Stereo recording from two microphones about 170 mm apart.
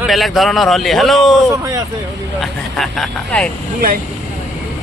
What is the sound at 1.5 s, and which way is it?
Speech, 20° right (ahead or behind).